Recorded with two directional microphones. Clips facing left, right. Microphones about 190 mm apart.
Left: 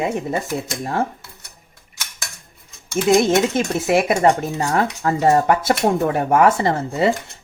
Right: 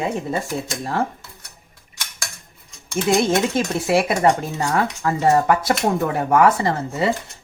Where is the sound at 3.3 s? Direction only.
20° left (ahead or behind).